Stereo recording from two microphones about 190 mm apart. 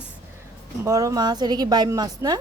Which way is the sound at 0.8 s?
15° right (ahead or behind).